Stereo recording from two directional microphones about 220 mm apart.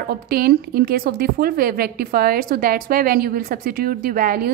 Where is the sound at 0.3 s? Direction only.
45° right (ahead or behind).